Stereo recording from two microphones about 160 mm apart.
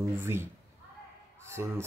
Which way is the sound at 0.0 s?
15° right (ahead or behind).